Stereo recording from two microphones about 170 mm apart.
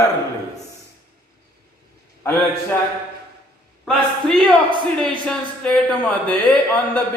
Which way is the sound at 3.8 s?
5° left (ahead or behind).